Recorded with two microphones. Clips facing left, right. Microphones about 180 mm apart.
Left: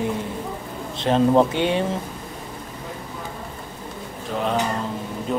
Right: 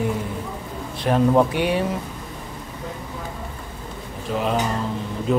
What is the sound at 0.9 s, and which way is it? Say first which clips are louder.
Speech: left 1 dB; 25° left (ahead or behind).